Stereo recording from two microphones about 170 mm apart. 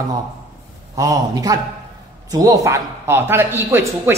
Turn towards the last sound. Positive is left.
turn(degrees=-15)  # may be behind; listen again after turning